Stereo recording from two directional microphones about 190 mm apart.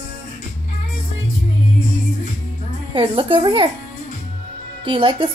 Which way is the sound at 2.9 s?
30° right (ahead or behind).